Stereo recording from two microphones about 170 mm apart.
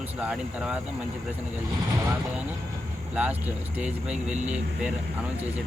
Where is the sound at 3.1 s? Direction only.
10° right (ahead or behind).